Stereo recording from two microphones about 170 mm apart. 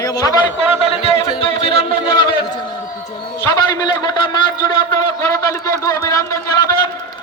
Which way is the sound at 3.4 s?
20° left (ahead or behind).